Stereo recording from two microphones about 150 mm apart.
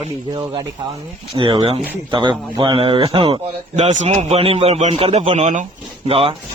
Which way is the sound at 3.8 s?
50° right (ahead or behind).